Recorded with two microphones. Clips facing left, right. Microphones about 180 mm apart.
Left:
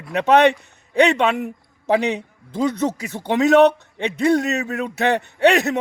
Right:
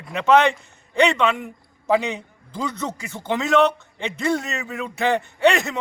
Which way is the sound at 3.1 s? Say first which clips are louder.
Left 5 dB; 65° left (ahead or behind).